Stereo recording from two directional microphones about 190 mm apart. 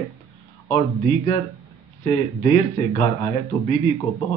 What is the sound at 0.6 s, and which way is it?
Speech, 25° left (ahead or behind).